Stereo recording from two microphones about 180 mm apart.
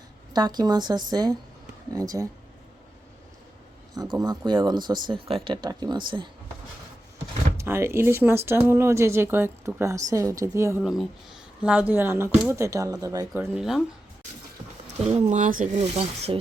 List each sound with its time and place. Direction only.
0.3 s speech: 20° right (ahead or behind)
3.9 s speech: 20° right (ahead or behind)
7.5 s speech: 15° right (ahead or behind)
10.8 s speech: centre (ahead or behind)
15.0 s speech: 40° right (ahead or behind)